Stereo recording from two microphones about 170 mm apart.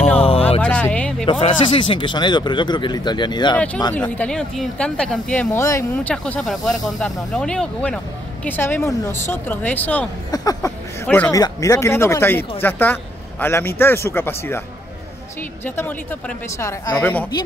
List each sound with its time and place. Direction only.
0.6 s a sound: 10° left (ahead or behind)
1.4 s speech: 30° left (ahead or behind)
3.5 s a man's voice: 10° left (ahead or behind)
10.3 s a sound: 20° left (ahead or behind)
11.3 s a man's voice: 20° left (ahead or behind)
15.6 s a man's voice: 10° left (ahead or behind)
17.0 s a man's voice: 10° left (ahead or behind)